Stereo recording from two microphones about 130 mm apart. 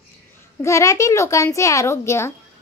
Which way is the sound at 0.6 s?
25° left (ahead or behind).